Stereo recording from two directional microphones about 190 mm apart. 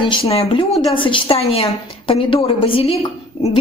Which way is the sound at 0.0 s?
25° left (ahead or behind).